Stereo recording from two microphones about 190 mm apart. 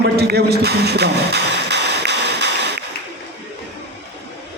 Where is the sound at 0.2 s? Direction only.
60° right (ahead or behind).